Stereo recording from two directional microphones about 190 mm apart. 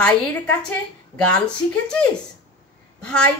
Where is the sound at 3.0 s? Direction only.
5° left (ahead or behind).